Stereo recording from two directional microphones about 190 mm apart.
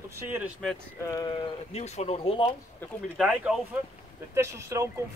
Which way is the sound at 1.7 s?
35° left (ahead or behind).